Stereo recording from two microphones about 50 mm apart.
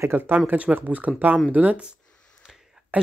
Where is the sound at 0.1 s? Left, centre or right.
Right.